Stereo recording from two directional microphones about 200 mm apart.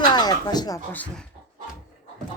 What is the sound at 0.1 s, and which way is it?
Speech, 20° left (ahead or behind).